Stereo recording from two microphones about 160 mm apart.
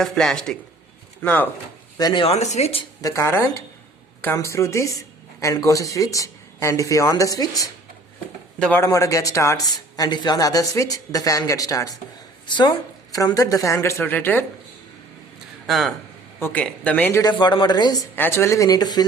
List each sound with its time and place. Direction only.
0.0 s speech: centre (ahead or behind)
2.0 s speech: 25° left (ahead or behind)
2.2 s speech: 40° left (ahead or behind)
3.0 s speech: 20° left (ahead or behind)
8.5 s speech: 10° left (ahead or behind)
15.6 s speech: centre (ahead or behind)
16.4 s speech: 10° left (ahead or behind)
17.3 s speech: 30° left (ahead or behind)
18.2 s speech: 15° left (ahead or behind)